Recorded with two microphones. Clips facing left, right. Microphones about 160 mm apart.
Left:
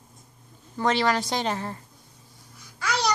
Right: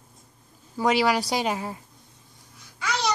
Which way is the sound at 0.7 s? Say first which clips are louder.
Right 2 dB; 10° right (ahead or behind).